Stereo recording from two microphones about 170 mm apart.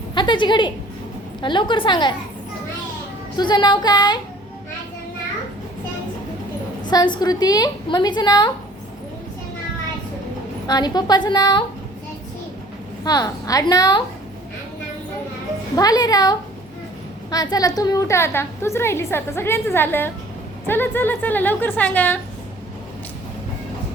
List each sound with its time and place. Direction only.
0.1 s a sound: 25° left (ahead or behind)
1.4 s a woman's voice: 25° left (ahead or behind)
3.3 s a woman's voice: 25° left (ahead or behind)
6.9 s a woman's voice: 25° left (ahead or behind)
10.7 s a woman's voice: 25° left (ahead or behind)
13.1 s a woman's voice: 20° left (ahead or behind)
15.7 s a woman's voice: 20° left (ahead or behind)